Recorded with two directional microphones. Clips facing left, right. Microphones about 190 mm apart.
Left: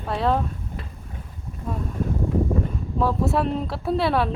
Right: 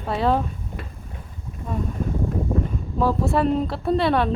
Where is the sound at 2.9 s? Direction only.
Centre (ahead or behind).